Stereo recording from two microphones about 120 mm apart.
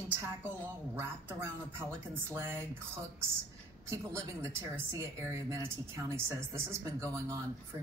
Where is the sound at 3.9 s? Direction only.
25° right (ahead or behind).